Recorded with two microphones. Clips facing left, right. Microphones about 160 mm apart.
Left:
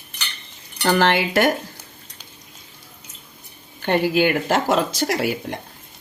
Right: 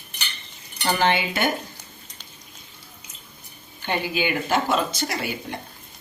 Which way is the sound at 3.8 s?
75° left (ahead or behind).